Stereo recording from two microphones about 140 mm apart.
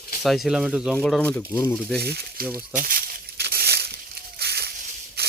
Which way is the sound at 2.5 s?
90° right.